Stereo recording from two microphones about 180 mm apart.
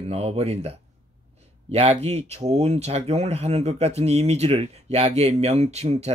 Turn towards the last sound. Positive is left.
turn(degrees=-35)  # may be behind; listen again after turning